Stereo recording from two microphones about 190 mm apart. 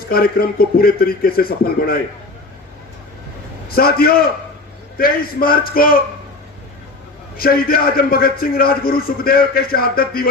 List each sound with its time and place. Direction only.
0.1 s a man's voice: 50° left (ahead or behind)
3.7 s a man's voice: 50° left (ahead or behind)
7.3 s a man's voice: 50° left (ahead or behind)